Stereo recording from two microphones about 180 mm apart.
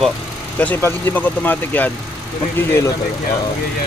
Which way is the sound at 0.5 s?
10° left (ahead or behind).